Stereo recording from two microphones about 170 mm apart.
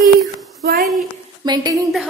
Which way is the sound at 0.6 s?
65° right (ahead or behind).